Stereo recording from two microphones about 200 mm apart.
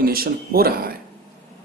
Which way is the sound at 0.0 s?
50° right (ahead or behind).